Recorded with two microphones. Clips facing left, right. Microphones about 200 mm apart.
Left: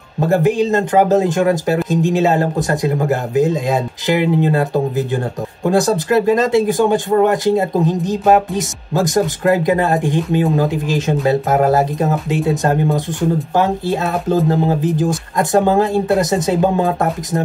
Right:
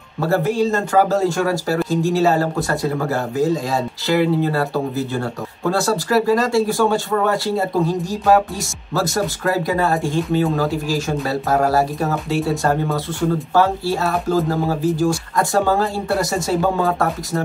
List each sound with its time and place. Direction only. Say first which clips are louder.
0.2 s speech: left 3 dB; 20° left (ahead or behind)